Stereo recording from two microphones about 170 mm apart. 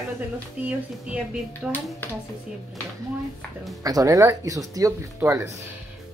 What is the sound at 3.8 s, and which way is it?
Speech, 20° right (ahead or behind).